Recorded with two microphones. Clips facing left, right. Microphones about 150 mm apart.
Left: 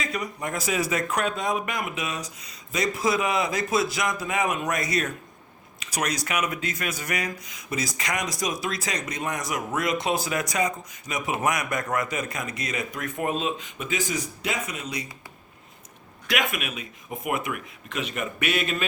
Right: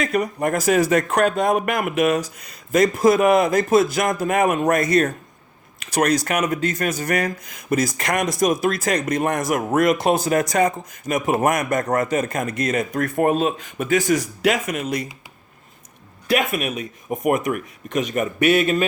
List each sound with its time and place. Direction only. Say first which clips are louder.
0.0 s speech: right 10 dB; 55° right (ahead or behind)
16.2 s speech: right 7 dB; 35° right (ahead or behind)